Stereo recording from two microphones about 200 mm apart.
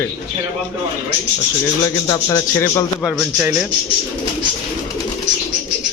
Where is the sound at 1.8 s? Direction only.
15° left (ahead or behind).